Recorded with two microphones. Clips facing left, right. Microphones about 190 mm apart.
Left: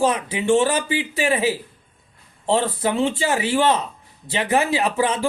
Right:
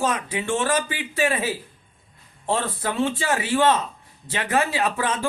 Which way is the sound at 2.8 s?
25° left (ahead or behind).